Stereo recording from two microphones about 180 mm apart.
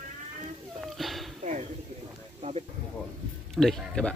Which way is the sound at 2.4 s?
35° right (ahead or behind).